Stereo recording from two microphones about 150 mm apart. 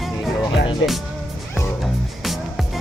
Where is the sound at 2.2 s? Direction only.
Centre (ahead or behind).